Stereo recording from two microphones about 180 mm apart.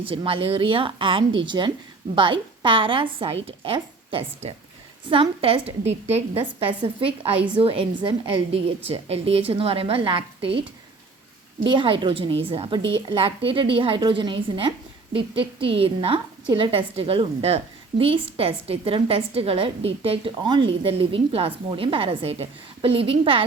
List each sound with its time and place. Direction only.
0.0 s a woman's voice: 30° right (ahead or behind)
8.9 s a woman's voice: 35° right (ahead or behind)
11.7 s a woman's voice: 25° right (ahead or behind)